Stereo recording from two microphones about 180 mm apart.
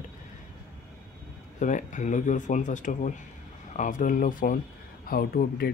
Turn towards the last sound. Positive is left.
turn(degrees=55)  # may be behind; listen again after turning